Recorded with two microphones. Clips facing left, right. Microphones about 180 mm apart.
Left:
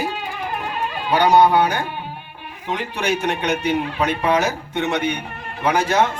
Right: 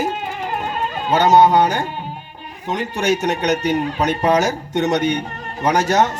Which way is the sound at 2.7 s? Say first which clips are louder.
Right 3 dB; 40° right (ahead or behind).